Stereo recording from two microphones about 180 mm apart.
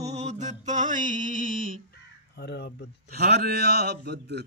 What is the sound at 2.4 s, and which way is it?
Speech, 60° left (ahead or behind).